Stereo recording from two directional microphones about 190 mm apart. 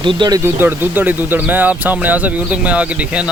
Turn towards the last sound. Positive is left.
turn(degrees=-5)  # may be behind; listen again after turning